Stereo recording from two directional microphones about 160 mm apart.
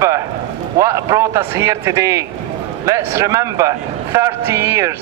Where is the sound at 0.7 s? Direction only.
20° right (ahead or behind).